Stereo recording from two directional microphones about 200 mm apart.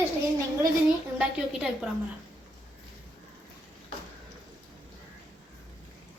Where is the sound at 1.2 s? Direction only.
5° right (ahead or behind).